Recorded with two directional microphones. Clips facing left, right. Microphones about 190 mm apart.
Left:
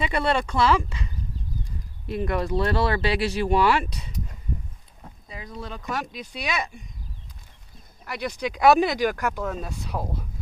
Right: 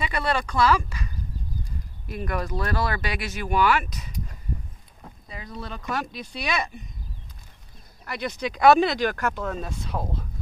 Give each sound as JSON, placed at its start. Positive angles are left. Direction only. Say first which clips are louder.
{"t": 0.0, "sound": "speech", "louder": "left 3 dB", "side_deg": 25}
{"t": 5.3, "sound": "speech", "louder": "even", "side_deg": 15}
{"t": 8.0, "sound": "speech", "louder": "even", "side_deg": 10}